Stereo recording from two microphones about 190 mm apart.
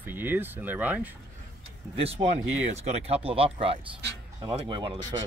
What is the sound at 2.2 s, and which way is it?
Speech, 20° right (ahead or behind).